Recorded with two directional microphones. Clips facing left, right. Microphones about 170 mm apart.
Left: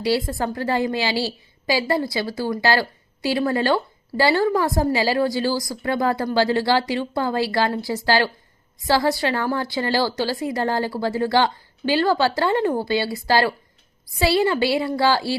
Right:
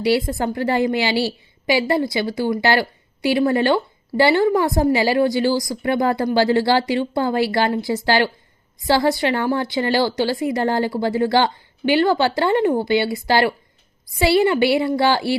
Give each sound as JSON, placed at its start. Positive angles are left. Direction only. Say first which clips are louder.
{"t": 0.3, "sound": "a woman's voice", "louder": "right 3 dB", "side_deg": -25}